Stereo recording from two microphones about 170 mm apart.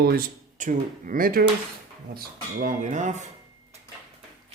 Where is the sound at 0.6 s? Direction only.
50° right (ahead or behind).